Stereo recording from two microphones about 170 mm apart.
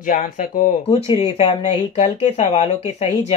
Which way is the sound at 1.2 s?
40° left (ahead or behind).